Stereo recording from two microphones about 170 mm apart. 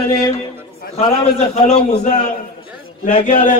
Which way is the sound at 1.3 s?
40° left (ahead or behind).